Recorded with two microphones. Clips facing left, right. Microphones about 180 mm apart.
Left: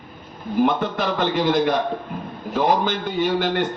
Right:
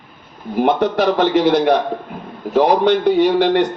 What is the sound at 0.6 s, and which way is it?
A man's voice, 70° right (ahead or behind).